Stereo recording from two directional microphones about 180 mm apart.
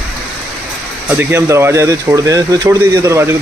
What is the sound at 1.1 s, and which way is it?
Speech, 10° right (ahead or behind).